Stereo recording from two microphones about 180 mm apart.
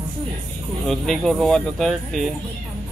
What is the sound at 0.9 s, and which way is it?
Speech, centre (ahead or behind).